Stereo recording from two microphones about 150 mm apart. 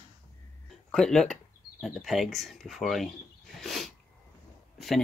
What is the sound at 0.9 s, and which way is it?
Speech, 5° left (ahead or behind).